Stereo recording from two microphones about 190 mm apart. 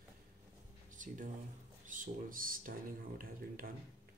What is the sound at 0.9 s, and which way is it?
Speech, 40° right (ahead or behind).